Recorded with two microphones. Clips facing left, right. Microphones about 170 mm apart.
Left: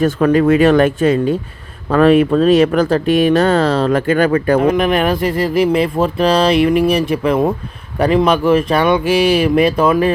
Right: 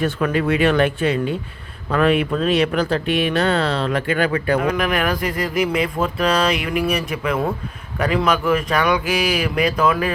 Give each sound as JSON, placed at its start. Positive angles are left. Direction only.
{"t": 0.0, "sound": "speech", "side_deg": 40}
{"t": 4.6, "sound": "speech", "side_deg": 25}